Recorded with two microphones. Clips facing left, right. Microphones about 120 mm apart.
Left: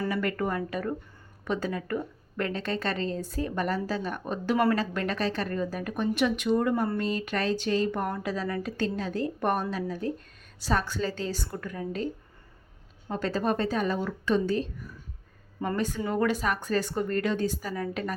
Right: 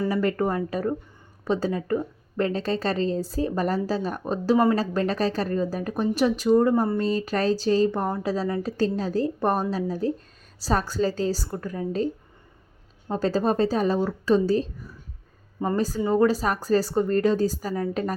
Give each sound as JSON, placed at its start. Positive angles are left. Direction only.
{"t": 0.1, "sound": "speech", "side_deg": -35}
{"t": 13.1, "sound": "speech", "side_deg": -35}